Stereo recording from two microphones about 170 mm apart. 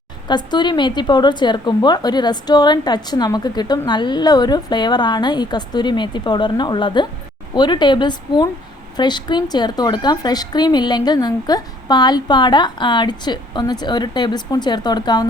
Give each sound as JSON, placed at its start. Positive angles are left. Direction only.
{"t": 0.3, "sound": "a woman's voice", "side_deg": 25}